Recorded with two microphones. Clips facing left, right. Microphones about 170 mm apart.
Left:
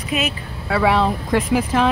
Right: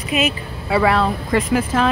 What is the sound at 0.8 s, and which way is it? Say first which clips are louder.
Speech: left 2 dB; 10° left (ahead or behind).